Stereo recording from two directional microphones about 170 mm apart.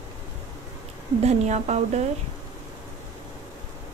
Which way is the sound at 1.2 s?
40° right (ahead or behind).